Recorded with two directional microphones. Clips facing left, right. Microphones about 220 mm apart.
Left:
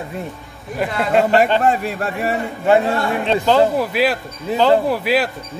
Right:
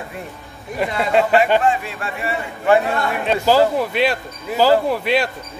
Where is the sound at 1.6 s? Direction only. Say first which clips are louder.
Left 2 dB; 40° left (ahead or behind).